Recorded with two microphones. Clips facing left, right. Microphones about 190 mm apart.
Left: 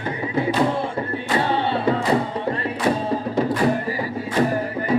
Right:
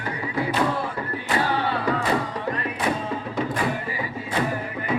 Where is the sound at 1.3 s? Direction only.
25° left (ahead or behind).